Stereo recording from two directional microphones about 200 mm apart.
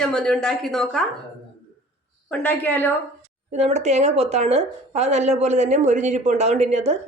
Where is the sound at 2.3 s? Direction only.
5° left (ahead or behind).